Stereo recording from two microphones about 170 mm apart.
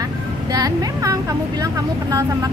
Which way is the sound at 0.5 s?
20° right (ahead or behind).